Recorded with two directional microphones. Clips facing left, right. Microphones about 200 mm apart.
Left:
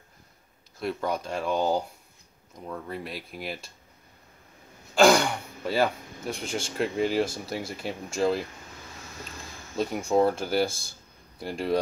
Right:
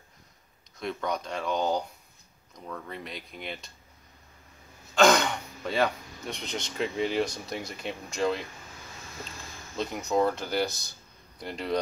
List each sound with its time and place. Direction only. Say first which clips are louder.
0.7 s speech: left 2 dB; 5° left (ahead or behind)
4.9 s speech: left 2 dB; 10° left (ahead or behind)
10.0 s speech: left 3 dB; 30° left (ahead or behind)
10.3 s speech: left 3 dB; 10° left (ahead or behind)
10.7 s speech: even; 25° left (ahead or behind)
11.3 s speech: left 3 dB; 5° left (ahead or behind)